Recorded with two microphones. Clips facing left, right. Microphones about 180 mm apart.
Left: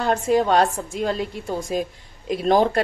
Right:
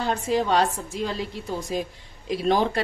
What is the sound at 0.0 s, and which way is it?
A woman's voice, 55° left (ahead or behind).